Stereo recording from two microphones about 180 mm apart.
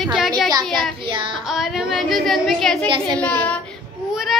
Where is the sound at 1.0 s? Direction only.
30° right (ahead or behind).